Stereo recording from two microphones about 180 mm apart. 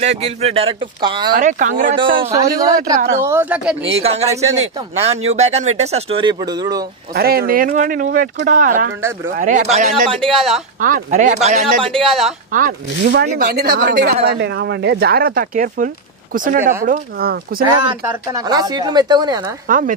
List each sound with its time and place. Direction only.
0.0 s speech: 35° right (ahead or behind)
1.3 s speech: 45° right (ahead or behind)
2.0 s a woman's voice: 25° right (ahead or behind); by 3.7 s 10° right (ahead or behind)
4.0 s speech: 35° right (ahead or behind)
7.2 s speech: 55° right (ahead or behind); by 10.3 s 35° right (ahead or behind)
10.3 s speech: centre (ahead or behind)
10.8 s speech: 45° right (ahead or behind)
12.0 s speech: centre (ahead or behind)
12.5 s speech: 50° right (ahead or behind)
18.0 s speech: 20° right (ahead or behind)
19.7 s speech: 45° right (ahead or behind)